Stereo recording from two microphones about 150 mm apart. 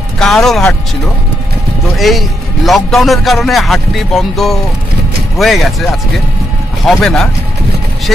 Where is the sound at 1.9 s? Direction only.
Centre (ahead or behind).